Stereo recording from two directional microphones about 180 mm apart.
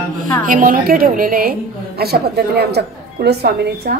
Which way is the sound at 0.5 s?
50° right (ahead or behind).